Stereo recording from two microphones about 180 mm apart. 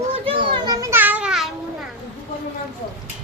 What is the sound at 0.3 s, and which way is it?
Children playing, 25° right (ahead or behind).